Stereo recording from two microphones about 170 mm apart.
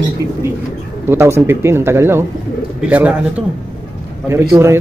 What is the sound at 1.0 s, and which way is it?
Speech, 15° right (ahead or behind).